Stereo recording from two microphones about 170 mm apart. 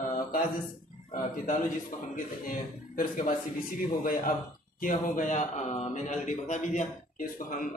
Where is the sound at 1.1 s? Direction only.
50° left (ahead or behind).